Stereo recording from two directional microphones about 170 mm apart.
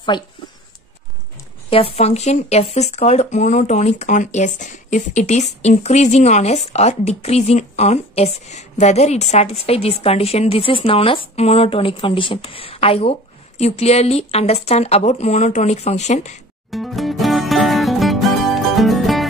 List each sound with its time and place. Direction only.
0.1 s speech: 30° left (ahead or behind)
1.7 s speech: 35° left (ahead or behind)
16.7 s music: centre (ahead or behind)